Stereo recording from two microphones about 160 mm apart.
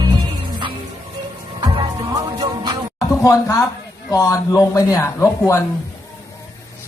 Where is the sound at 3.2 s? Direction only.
20° left (ahead or behind).